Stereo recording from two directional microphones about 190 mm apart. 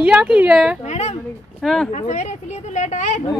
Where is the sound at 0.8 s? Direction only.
35° left (ahead or behind).